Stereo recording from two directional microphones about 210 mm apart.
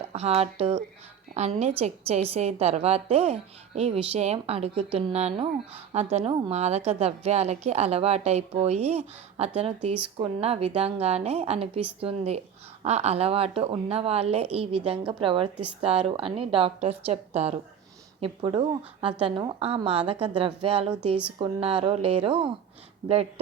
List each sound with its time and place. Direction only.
0.1 s a woman's voice: 30° right (ahead or behind)